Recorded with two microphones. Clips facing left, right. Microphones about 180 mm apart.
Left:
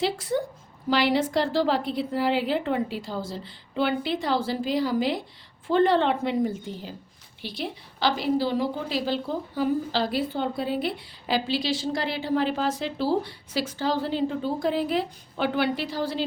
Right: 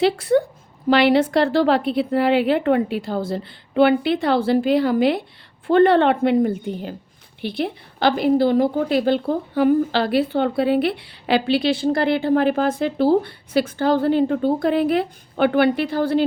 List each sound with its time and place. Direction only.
0.0 s a woman's voice: 65° right (ahead or behind)